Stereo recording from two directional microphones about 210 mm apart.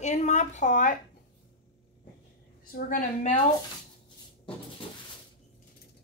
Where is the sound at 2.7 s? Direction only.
45° left (ahead or behind).